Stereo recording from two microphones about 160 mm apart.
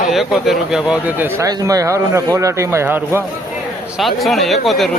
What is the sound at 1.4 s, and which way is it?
Speech, 20° right (ahead or behind).